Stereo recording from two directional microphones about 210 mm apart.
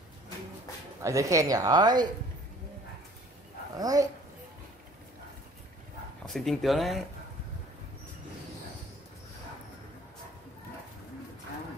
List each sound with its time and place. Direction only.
1.0 s a woman's voice: 15° right (ahead or behind)
3.7 s a woman's voice: 15° right (ahead or behind)
6.2 s speech: centre (ahead or behind)